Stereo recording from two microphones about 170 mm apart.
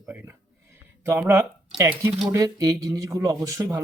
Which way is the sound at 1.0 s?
15° right (ahead or behind).